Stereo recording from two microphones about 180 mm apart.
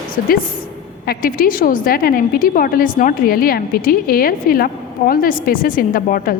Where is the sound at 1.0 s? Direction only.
50° left (ahead or behind).